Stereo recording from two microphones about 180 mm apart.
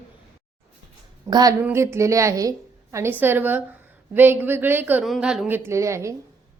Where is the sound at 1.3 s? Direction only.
20° right (ahead or behind); by 5.6 s 5° right (ahead or behind).